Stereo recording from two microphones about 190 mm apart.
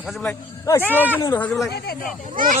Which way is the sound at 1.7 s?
55° left (ahead or behind).